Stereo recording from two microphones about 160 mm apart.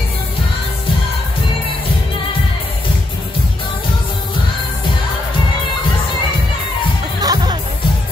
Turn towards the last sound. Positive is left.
turn(degrees=-25)  # may be behind; listen again after turning